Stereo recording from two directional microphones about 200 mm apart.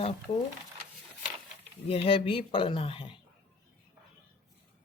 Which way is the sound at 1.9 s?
25° left (ahead or behind).